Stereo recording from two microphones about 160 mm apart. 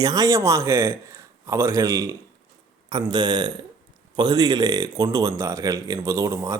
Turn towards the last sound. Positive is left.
turn(degrees=-20)  # may be behind; listen again after turning